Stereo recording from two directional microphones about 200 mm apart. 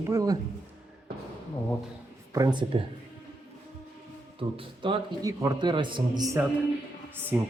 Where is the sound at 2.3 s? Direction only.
20° right (ahead or behind).